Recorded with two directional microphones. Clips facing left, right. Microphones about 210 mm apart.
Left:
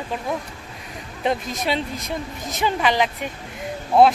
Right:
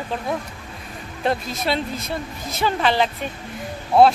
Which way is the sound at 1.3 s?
15° left (ahead or behind).